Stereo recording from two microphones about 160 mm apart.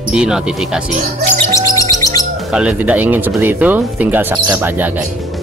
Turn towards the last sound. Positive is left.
turn(degrees=-10)  # may be behind; listen again after turning